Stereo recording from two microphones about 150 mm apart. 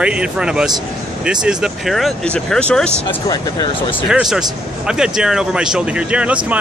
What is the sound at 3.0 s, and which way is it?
Speech, 30° left (ahead or behind).